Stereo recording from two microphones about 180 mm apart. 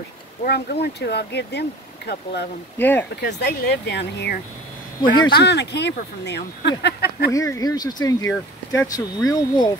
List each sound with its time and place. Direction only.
0.5 s speech: 65° left (ahead or behind)
2.8 s speech: 10° left (ahead or behind)
3.2 s speech: 70° left (ahead or behind)
5.0 s speech: 25° left (ahead or behind)
5.3 s speech: 75° left (ahead or behind)
7.3 s speech: 20° left (ahead or behind)